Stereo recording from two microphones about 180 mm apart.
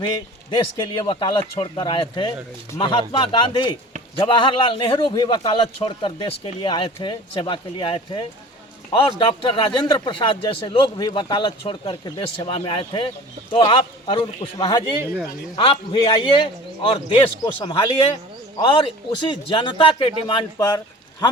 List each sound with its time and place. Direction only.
1.0 s a man's voice: 30° left (ahead or behind)